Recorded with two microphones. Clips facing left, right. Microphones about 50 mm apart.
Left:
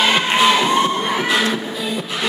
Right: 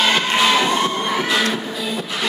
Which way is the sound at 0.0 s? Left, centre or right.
Centre.